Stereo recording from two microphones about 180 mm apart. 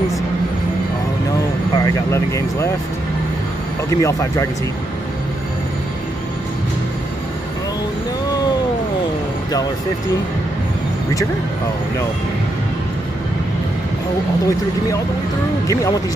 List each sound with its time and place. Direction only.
1.8 s speech: 15° left (ahead or behind)
3.9 s speech: 15° left (ahead or behind)
15.6 s speech: 15° left (ahead or behind)